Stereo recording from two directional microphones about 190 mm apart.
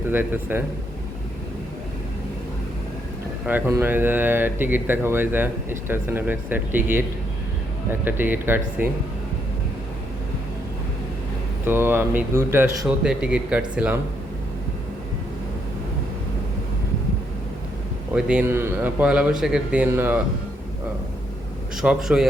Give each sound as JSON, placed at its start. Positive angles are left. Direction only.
{"t": 0.1, "sound": "speech", "side_deg": -10}
{"t": 3.4, "sound": "speech", "side_deg": -10}
{"t": 11.6, "sound": "speech", "side_deg": -10}
{"t": 18.1, "sound": "speech", "side_deg": -5}
{"t": 21.8, "sound": "speech", "side_deg": -5}